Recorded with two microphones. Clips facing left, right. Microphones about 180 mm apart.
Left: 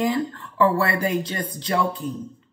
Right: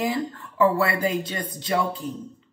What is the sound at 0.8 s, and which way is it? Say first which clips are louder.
Speech: left 1 dB; 20° right (ahead or behind).